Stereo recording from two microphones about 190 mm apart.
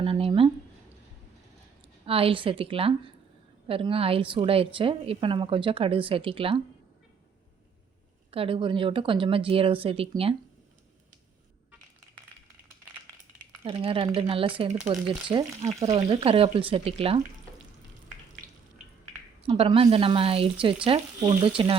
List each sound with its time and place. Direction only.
0.0 s speech: 30° right (ahead or behind)
2.0 s a woman's voice: 30° right (ahead or behind)
8.3 s a woman's voice: 30° right (ahead or behind)
13.7 s a woman's voice: 30° right (ahead or behind)
19.4 s a woman's voice: 30° right (ahead or behind)